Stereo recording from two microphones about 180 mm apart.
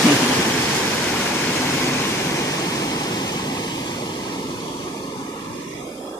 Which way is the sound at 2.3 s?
15° left (ahead or behind).